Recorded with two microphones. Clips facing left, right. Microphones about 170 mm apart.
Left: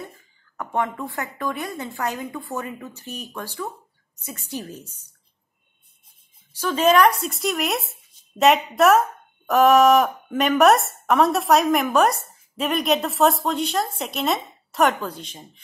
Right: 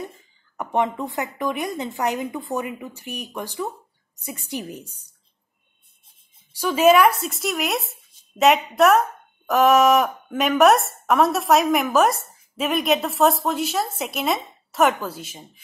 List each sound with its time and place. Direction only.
0.0 s a woman's voice: 20° right (ahead or behind)
6.5 s a woman's voice: 10° right (ahead or behind)